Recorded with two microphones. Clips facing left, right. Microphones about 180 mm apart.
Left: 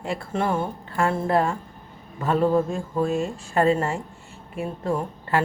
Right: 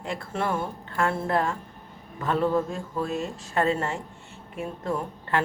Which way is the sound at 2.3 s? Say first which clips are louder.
Left 4 dB; 35° left (ahead or behind).